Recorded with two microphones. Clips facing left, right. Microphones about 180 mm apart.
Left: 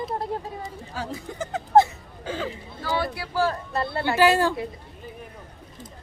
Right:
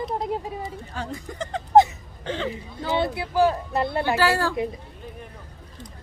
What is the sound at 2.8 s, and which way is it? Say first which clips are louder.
Speech: right 3 dB; 20° right (ahead or behind).